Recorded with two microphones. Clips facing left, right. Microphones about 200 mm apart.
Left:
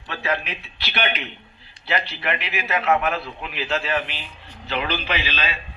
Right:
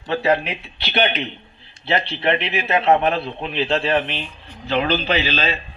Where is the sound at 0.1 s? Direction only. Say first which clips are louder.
Right 8 dB; 35° right (ahead or behind).